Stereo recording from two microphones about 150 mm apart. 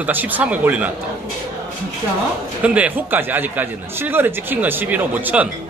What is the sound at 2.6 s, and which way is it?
Speech, 10° right (ahead or behind).